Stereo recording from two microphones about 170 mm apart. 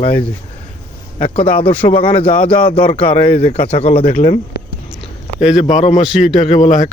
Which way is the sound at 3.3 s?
40° left (ahead or behind).